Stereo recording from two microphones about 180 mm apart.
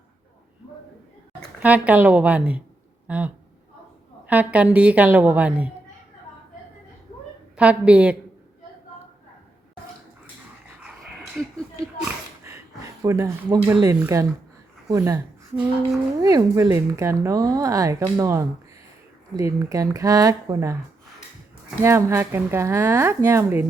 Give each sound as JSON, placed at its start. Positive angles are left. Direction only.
{"t": 1.6, "sound": "speech", "side_deg": -10}
{"t": 7.5, "sound": "speech", "side_deg": -5}
{"t": 12.5, "sound": "a sound", "side_deg": -15}
{"t": 14.0, "sound": "speech", "side_deg": -15}
{"t": 21.8, "sound": "speech", "side_deg": -15}